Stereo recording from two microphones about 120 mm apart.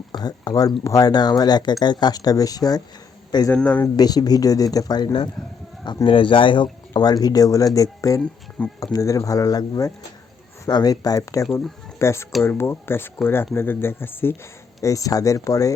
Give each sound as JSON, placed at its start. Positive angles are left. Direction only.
{"t": 0.1, "sound": "speech", "side_deg": 35}
{"t": 3.5, "sound": "speech", "side_deg": 10}
{"t": 3.9, "sound": "speech", "side_deg": 35}
{"t": 6.9, "sound": "speech", "side_deg": 30}
{"t": 8.2, "sound": "speech", "side_deg": 10}
{"t": 8.8, "sound": "speech", "side_deg": 30}